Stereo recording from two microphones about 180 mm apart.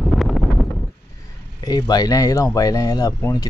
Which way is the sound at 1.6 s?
20° left (ahead or behind).